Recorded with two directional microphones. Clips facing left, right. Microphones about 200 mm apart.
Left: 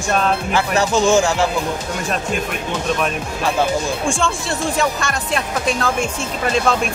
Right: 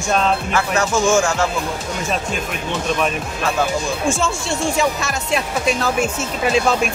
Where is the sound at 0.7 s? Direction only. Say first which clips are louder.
Left 2 dB; 15° left (ahead or behind).